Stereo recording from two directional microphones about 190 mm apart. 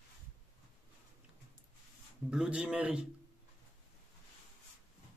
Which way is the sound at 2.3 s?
5° right (ahead or behind).